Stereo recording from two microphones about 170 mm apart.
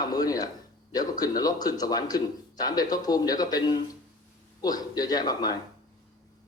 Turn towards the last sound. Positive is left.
turn(degrees=25)  # may be behind; listen again after turning